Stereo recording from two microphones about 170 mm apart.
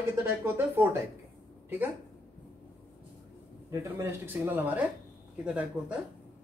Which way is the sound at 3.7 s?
15° right (ahead or behind).